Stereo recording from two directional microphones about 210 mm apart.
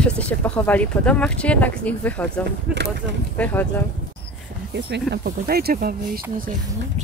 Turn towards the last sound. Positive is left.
turn(degrees=-45)  # may be behind; listen again after turning